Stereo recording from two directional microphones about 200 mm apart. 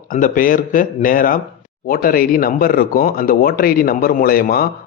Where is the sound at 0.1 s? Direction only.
45° left (ahead or behind).